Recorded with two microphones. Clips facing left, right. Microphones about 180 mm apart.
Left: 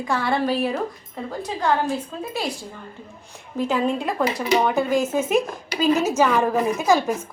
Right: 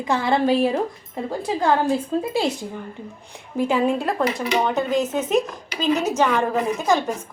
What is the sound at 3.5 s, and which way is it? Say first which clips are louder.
A woman's voice: right 2 dB; 10° right (ahead or behind).